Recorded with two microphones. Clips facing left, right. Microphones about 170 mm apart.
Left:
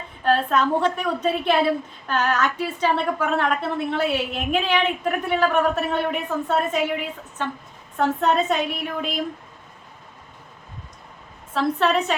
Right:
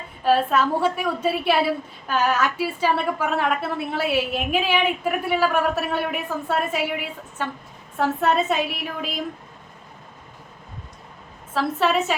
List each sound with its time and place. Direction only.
0.2 s a woman's voice: 5° right (ahead or behind)
11.5 s a woman's voice: 5° right (ahead or behind)